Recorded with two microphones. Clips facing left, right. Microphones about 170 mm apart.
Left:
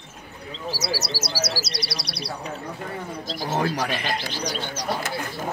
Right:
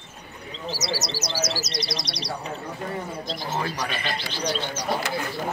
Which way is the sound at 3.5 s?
55° left (ahead or behind).